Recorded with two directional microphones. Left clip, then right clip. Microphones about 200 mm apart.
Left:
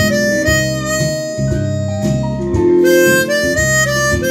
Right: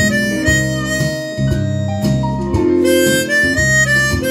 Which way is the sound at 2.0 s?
30° right (ahead or behind).